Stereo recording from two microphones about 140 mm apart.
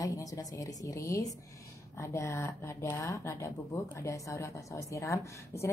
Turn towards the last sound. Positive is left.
turn(degrees=20)  # may be behind; listen again after turning